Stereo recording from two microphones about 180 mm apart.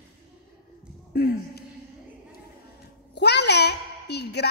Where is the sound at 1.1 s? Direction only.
60° left (ahead or behind).